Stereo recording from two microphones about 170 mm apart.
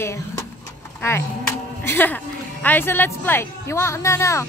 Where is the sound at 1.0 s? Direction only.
15° left (ahead or behind).